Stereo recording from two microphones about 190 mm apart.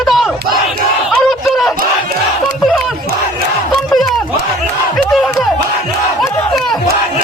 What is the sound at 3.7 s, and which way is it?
Battle cry, centre (ahead or behind).